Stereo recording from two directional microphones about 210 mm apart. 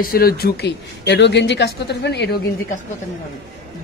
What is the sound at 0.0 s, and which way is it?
A woman's voice, 45° left (ahead or behind).